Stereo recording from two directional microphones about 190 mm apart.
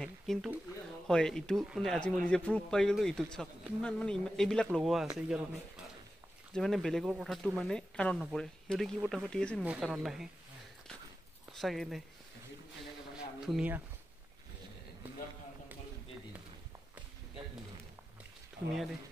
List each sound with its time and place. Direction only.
0.0 s speech: centre (ahead or behind)
6.5 s speech: centre (ahead or behind)
11.5 s speech: centre (ahead or behind)
13.1 s a sound: 5° right (ahead or behind)
18.6 s speech: 60° right (ahead or behind)